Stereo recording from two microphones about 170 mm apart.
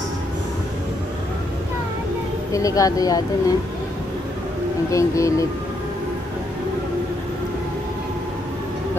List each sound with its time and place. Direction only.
2.5 s speech: 20° left (ahead or behind)
4.9 s speech: 20° left (ahead or behind)